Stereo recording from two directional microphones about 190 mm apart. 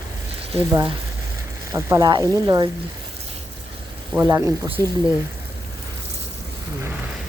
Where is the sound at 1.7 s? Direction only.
20° right (ahead or behind).